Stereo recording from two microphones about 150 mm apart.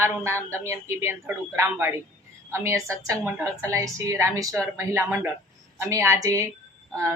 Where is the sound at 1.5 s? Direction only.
20° right (ahead or behind).